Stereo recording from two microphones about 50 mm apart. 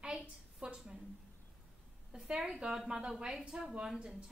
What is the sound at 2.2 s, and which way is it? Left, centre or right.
A woman's voice, centre.